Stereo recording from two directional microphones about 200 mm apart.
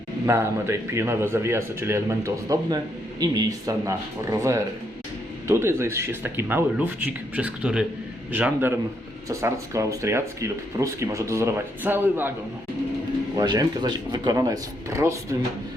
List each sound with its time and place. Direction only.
0.3 s a man's voice: 15° right (ahead or behind)
13.3 s a man's voice: 20° right (ahead or behind)